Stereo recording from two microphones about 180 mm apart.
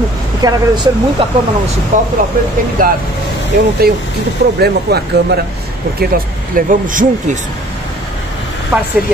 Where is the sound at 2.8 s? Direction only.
50° right (ahead or behind).